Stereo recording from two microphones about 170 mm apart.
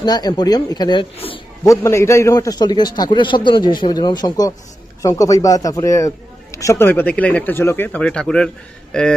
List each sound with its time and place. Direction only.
0.0 s a man's voice: 25° left (ahead or behind)
1.6 s a man's voice: 15° left (ahead or behind)